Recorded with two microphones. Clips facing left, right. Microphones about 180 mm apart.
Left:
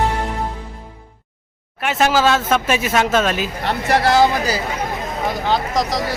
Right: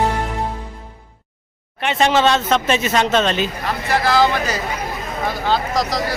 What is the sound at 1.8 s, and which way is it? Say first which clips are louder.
Speech: even; 5° left (ahead or behind).